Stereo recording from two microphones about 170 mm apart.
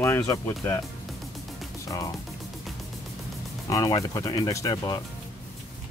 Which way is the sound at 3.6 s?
20° left (ahead or behind).